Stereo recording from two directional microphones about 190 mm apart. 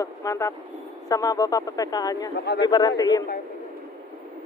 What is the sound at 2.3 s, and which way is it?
Speech, 60° left (ahead or behind).